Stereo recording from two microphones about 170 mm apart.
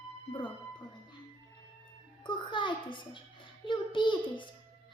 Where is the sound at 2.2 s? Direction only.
25° left (ahead or behind).